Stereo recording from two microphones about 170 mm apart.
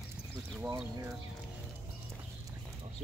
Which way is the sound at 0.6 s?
10° right (ahead or behind).